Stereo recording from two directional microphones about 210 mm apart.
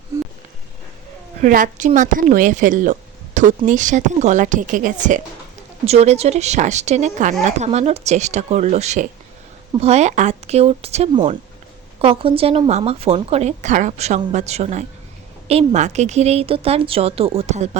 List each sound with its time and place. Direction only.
1.4 s speech: 40° right (ahead or behind)
3.4 s a sound: 35° right (ahead or behind)
3.7 s a woman's voice: 35° right (ahead or behind)